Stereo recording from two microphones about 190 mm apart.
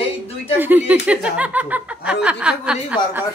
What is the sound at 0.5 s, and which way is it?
Speech, 10° right (ahead or behind).